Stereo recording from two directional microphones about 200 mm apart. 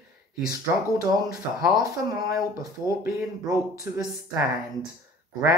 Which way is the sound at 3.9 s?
10° right (ahead or behind).